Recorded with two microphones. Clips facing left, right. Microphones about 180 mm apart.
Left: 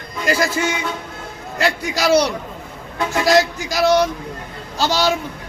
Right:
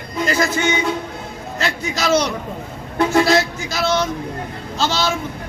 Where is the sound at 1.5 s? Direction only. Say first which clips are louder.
Left 3 dB; 15° left (ahead or behind).